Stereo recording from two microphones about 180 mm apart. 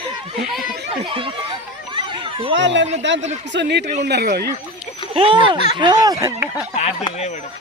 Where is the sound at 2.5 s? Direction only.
85° right; by 4.5 s 60° right (ahead or behind).